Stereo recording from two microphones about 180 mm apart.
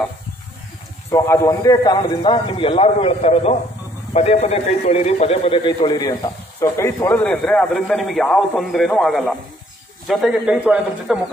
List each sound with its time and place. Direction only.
1.1 s a man's voice: 15° left (ahead or behind); by 11.2 s 5° right (ahead or behind)